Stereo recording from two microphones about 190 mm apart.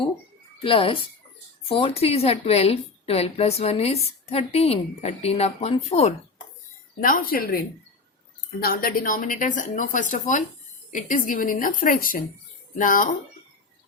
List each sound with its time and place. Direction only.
0.6 s a woman's voice: 30° left (ahead or behind)
7.0 s speech: 50° left (ahead or behind)
8.6 s speech: 50° left (ahead or behind)